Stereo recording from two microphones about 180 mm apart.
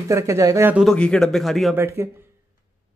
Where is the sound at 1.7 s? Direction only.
15° right (ahead or behind).